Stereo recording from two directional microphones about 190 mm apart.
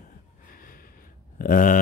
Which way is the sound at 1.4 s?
45° left (ahead or behind).